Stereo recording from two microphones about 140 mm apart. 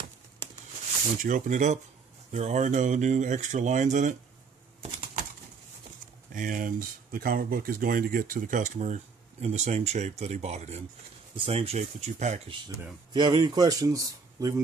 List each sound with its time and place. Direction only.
1.2 s speech: 65° right (ahead or behind)
6.3 s speech: 75° right (ahead or behind); by 10.8 s 55° right (ahead or behind)
11.3 s speech: 40° right (ahead or behind)
12.4 s speech: 35° right (ahead or behind)